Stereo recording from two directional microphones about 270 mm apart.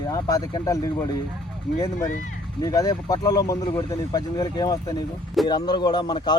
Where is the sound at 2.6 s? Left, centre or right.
Centre.